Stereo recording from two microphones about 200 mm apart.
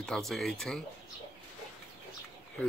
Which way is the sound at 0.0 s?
Centre (ahead or behind).